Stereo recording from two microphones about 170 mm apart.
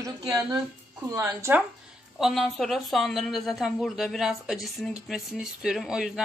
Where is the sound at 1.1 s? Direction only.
15° right (ahead or behind).